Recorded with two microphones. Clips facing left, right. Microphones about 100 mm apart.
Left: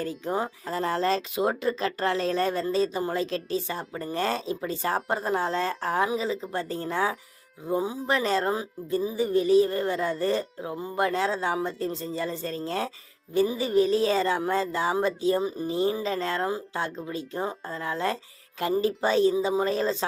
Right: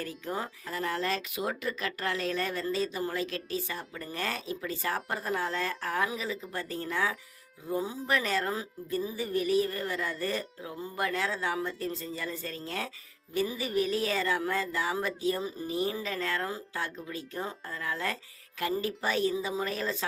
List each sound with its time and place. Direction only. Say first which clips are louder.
0.0 s speech: left 6 dB; 25° left (ahead or behind)